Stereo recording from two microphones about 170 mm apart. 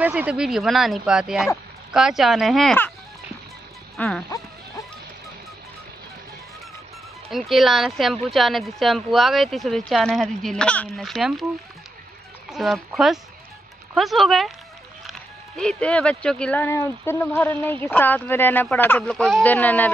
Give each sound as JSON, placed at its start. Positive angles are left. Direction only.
{"t": 0.0, "sound": "speech", "side_deg": -5}
{"t": 3.9, "sound": "speech", "side_deg": 5}
{"t": 7.2, "sound": "speech", "side_deg": 0}
{"t": 12.4, "sound": "speech", "side_deg": 0}